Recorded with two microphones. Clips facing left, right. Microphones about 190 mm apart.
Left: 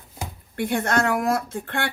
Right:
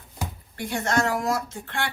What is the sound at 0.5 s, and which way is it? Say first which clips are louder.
Speech: left 3 dB; 55° left (ahead or behind).